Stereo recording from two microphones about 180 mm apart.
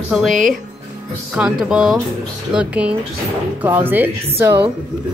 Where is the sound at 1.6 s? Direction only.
5° right (ahead or behind).